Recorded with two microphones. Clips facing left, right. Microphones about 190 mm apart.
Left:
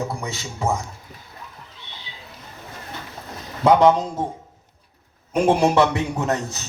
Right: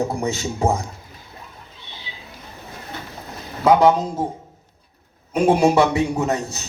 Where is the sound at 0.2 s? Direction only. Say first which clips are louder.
Right 6 dB; 40° right (ahead or behind).